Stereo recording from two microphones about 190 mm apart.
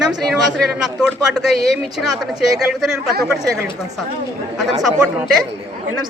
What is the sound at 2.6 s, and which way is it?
A woman's voice, centre (ahead or behind).